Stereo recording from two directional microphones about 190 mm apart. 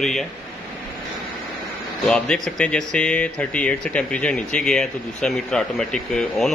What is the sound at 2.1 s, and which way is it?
Speech, 5° left (ahead or behind).